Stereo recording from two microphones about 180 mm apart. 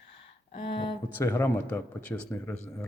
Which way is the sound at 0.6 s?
30° left (ahead or behind).